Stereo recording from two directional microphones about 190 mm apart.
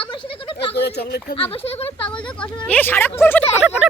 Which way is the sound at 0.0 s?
30° left (ahead or behind).